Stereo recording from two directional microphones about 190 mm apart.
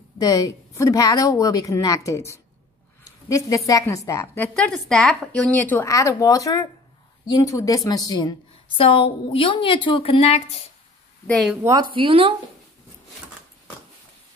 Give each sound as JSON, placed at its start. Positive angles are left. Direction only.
{"t": 0.2, "sound": "a woman's voice", "side_deg": 20}
{"t": 11.2, "sound": "speech", "side_deg": 5}
{"t": 11.6, "sound": "a woman's voice", "side_deg": -20}